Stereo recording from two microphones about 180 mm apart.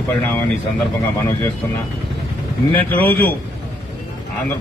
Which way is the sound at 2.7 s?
10° left (ahead or behind).